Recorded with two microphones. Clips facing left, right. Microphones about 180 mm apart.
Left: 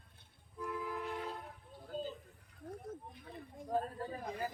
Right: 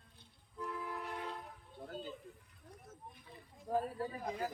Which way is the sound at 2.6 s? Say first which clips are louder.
Left 11 dB; 45° left (ahead or behind).